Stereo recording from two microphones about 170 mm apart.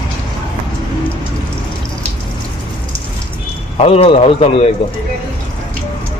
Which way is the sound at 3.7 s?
35° left (ahead or behind).